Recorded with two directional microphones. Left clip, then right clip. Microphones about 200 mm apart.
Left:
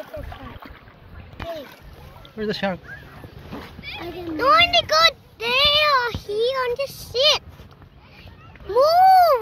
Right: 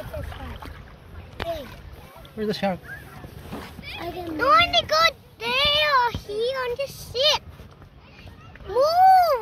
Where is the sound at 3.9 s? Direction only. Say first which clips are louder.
Left 3 dB; 60° right (ahead or behind).